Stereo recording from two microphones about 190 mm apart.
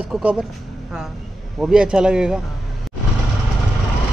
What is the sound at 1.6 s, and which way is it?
Speech, 5° right (ahead or behind).